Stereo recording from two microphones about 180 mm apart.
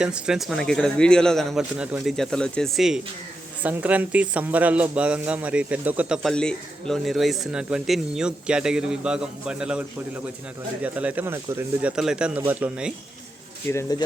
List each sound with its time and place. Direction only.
0.0 s speech: 5° right (ahead or behind)
10.8 s speech: 10° right (ahead or behind)
13.9 s speech: 20° left (ahead or behind)